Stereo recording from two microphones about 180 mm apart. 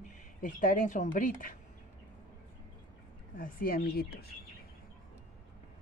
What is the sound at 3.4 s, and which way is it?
Speech, 50° left (ahead or behind).